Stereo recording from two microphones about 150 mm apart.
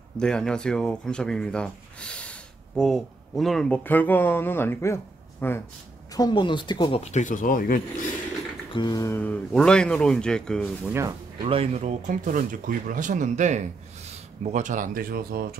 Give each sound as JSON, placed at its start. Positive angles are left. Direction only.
{"t": 0.2, "sound": "speech", "side_deg": 5}
{"t": 6.1, "sound": "speech", "side_deg": 30}
{"t": 7.0, "sound": "speech", "side_deg": 50}
{"t": 8.7, "sound": "a sound", "side_deg": 25}
{"t": 9.1, "sound": "speech", "side_deg": 10}
{"t": 10.9, "sound": "speech", "side_deg": -20}
{"t": 11.4, "sound": "speech", "side_deg": -40}